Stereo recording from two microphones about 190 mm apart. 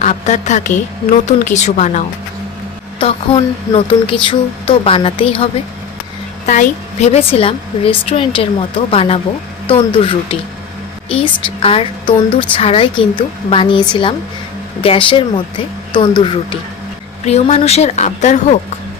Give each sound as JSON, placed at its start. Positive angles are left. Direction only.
{"t": 0.0, "sound": "a woman's voice", "side_deg": 40}
{"t": 3.0, "sound": "a woman's voice", "side_deg": 25}